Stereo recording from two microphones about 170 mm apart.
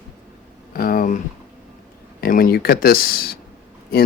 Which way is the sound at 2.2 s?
60° left (ahead or behind).